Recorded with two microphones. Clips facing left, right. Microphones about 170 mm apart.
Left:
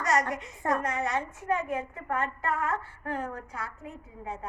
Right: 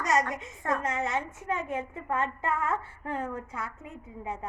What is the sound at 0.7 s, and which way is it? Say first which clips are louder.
A woman's voice: left 1 dB; 25° right (ahead or behind).